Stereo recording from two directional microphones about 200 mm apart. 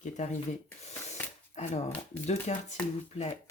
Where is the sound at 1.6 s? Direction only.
35° left (ahead or behind).